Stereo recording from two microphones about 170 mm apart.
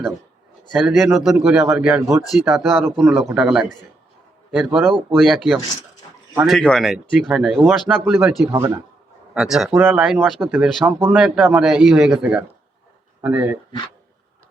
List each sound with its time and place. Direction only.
0.7 s speech: 5° right (ahead or behind)
8.4 s speech: 15° right (ahead or behind)
9.3 s speech: 5° right (ahead or behind)